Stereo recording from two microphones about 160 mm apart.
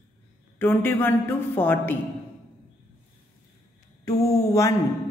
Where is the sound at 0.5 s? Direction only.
15° left (ahead or behind).